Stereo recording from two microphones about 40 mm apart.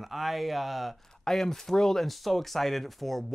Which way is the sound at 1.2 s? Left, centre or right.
Centre.